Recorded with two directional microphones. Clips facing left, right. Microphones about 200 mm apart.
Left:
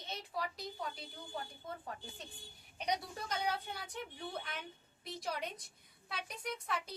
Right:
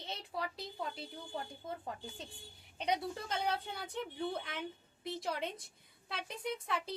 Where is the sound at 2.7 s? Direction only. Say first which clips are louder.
Right 3 dB; 25° right (ahead or behind).